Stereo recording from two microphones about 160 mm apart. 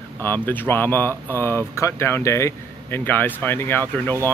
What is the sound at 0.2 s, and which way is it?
Speech, 10° left (ahead or behind).